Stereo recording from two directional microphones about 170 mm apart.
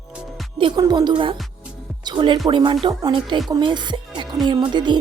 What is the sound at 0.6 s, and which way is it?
Speech, 25° right (ahead or behind).